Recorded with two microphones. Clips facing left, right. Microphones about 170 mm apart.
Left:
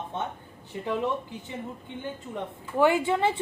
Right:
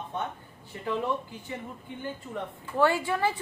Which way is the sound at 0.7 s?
20° left (ahead or behind).